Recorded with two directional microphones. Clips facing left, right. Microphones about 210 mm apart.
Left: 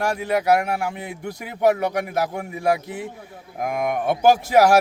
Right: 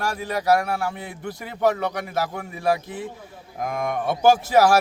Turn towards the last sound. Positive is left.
turn(degrees=15)  # may be behind; listen again after turning